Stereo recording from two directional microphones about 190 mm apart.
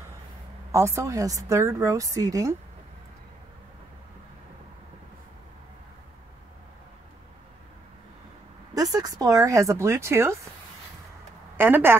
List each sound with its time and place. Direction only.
0.7 s speech: 15° right (ahead or behind)
8.7 s speech: 20° right (ahead or behind)
11.5 s speech: 10° right (ahead or behind)